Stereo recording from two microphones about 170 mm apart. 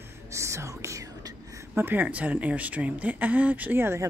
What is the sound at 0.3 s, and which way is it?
Whispering, 15° right (ahead or behind).